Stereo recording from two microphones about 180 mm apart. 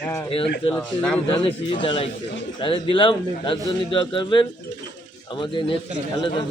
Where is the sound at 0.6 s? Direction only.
30° left (ahead or behind).